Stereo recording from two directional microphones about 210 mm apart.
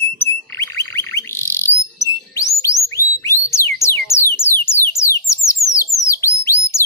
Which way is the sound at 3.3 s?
15° left (ahead or behind).